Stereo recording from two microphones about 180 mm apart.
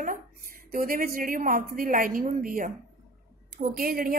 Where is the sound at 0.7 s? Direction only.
50° right (ahead or behind).